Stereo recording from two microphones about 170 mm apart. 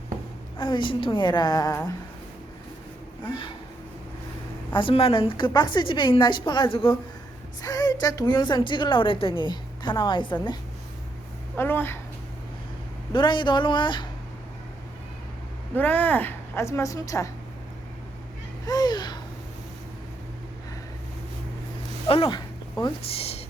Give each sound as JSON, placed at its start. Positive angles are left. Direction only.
{"t": 0.6, "sound": "a woman's voice", "side_deg": 30}
{"t": 4.7, "sound": "a woman's voice", "side_deg": 30}
{"t": 11.5, "sound": "a woman's voice", "side_deg": 10}
{"t": 13.1, "sound": "a woman's voice", "side_deg": 30}
{"t": 15.7, "sound": "a woman's voice", "side_deg": 10}
{"t": 18.6, "sound": "a sound", "side_deg": 25}
{"t": 22.0, "sound": "speech", "side_deg": 30}